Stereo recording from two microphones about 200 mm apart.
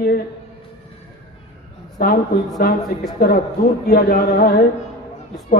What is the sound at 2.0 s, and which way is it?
Speech, 50° left (ahead or behind).